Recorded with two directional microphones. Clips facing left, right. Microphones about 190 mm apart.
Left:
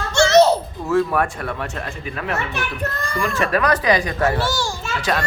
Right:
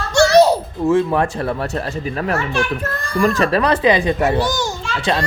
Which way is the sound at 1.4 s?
35° right (ahead or behind).